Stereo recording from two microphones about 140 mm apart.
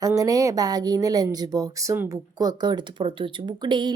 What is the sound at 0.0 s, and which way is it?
A woman's voice, 25° right (ahead or behind).